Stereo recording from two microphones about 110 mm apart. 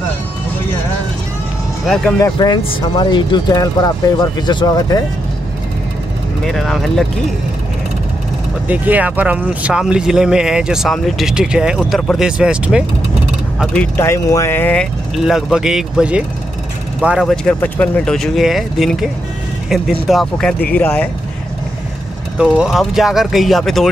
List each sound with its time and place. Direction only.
2.3 s speech: 40° left (ahead or behind)
6.4 s speech: 5° left (ahead or behind)
8.6 s speech: 15° right (ahead or behind)
13.7 s speech: 20° left (ahead or behind)
15.2 s speech: 5° right (ahead or behind)
17.2 s speech: 5° left (ahead or behind)
22.4 s speech: 5° right (ahead or behind)